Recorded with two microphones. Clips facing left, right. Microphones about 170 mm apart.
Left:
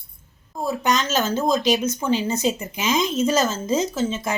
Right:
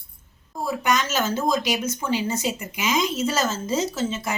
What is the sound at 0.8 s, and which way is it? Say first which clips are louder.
Speech: left 1 dB; 20° left (ahead or behind).